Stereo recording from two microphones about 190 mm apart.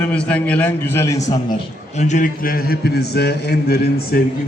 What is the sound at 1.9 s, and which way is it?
A man's voice, 40° left (ahead or behind).